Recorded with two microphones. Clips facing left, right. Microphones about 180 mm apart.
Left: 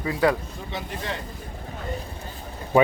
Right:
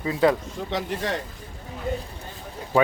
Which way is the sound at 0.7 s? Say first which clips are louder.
Right 6 dB; 90° right.